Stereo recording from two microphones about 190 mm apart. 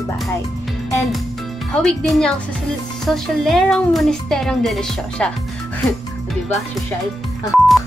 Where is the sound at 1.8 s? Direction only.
5° left (ahead or behind).